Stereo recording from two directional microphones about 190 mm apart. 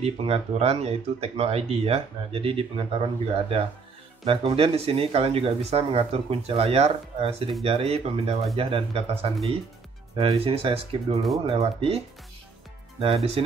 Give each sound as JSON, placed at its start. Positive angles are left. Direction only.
{"t": 0.0, "sound": "speech", "side_deg": -30}
{"t": 4.2, "sound": "speech", "side_deg": -30}
{"t": 11.3, "sound": "speech", "side_deg": -20}
{"t": 13.0, "sound": "speech", "side_deg": -30}